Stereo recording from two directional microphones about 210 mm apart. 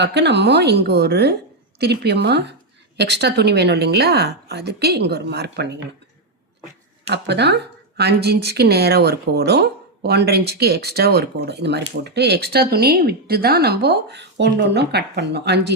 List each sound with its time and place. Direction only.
0.0 s speech: 55° right (ahead or behind)
7.1 s speech: 55° right (ahead or behind)